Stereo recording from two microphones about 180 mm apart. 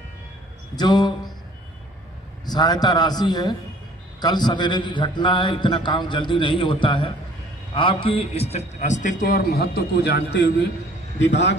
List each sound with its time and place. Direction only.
0.7 s a man's voice: 25° left (ahead or behind)
2.4 s a man's voice: 20° left (ahead or behind); by 11.5 s 80° left